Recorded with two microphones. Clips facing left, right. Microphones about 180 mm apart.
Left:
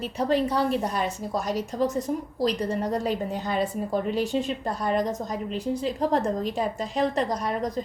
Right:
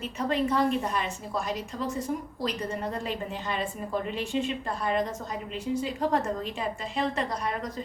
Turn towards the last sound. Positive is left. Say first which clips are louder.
# left 4 dB
turn(degrees=40)  # may be behind; listen again after turning